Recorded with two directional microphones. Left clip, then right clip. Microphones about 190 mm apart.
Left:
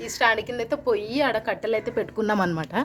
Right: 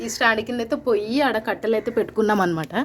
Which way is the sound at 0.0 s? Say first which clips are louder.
Right 2 dB; 10° right (ahead or behind).